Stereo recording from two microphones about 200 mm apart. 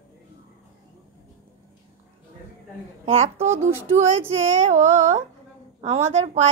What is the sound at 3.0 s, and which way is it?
A woman's voice, 30° right (ahead or behind).